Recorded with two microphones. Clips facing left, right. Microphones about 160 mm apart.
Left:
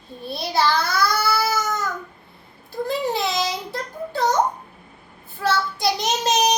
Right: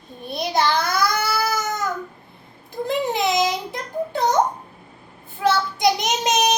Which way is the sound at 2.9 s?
20° right (ahead or behind).